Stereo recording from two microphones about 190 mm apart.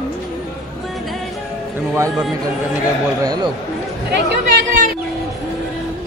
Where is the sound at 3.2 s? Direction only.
20° right (ahead or behind).